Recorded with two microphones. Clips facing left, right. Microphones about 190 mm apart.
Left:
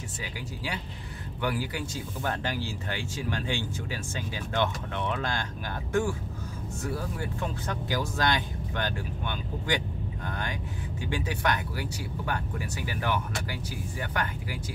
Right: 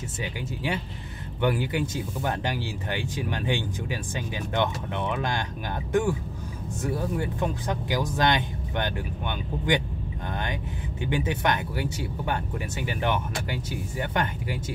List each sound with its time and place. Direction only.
1.4 s speech: 20° right (ahead or behind)
7.2 s speech: 20° right (ahead or behind)